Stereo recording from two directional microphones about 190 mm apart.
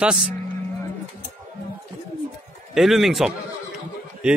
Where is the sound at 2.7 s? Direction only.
Centre (ahead or behind).